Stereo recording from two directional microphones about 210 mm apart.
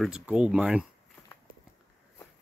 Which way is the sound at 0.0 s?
5° right (ahead or behind).